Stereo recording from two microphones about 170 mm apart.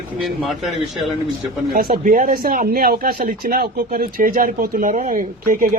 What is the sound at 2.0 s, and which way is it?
Speech, 50° right (ahead or behind).